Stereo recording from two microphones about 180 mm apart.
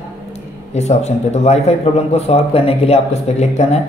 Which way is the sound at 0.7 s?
35° left (ahead or behind).